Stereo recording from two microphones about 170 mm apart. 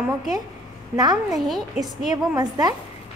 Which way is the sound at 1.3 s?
Centre (ahead or behind).